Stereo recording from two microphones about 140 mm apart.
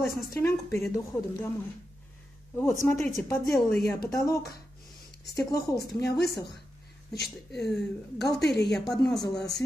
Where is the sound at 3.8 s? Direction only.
90° left.